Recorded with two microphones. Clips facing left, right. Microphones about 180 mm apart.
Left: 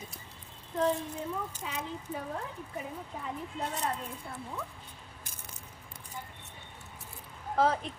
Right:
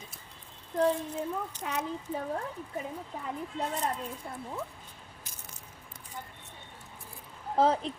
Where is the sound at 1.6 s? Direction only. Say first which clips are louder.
Right 4 dB; 55° right (ahead or behind).